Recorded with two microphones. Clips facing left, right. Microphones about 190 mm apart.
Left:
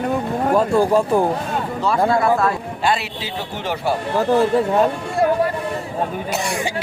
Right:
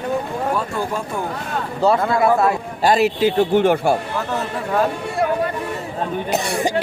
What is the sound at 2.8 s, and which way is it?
A man's voice, 45° right (ahead or behind).